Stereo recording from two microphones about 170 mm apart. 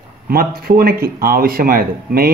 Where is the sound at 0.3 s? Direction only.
60° right (ahead or behind).